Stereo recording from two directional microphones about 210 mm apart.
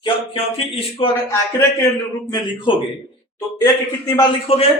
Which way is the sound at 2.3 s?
25° left (ahead or behind).